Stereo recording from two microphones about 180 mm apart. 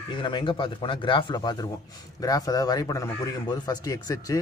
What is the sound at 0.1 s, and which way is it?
A man's voice, 30° left (ahead or behind).